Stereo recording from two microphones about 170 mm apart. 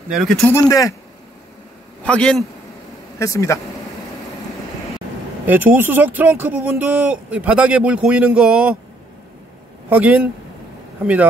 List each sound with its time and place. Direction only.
0.1 s speech: centre (ahead or behind)
0.5 s a man's voice: 20° left (ahead or behind)
2.0 s a man's voice: 5° left (ahead or behind)
3.2 s a man's voice: 15° left (ahead or behind)
5.5 s speech: 10° right (ahead or behind)
9.8 s speech: 10° right (ahead or behind)